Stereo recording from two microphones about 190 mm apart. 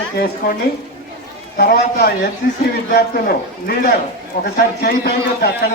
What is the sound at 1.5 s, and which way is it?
A man's voice, 55° left (ahead or behind).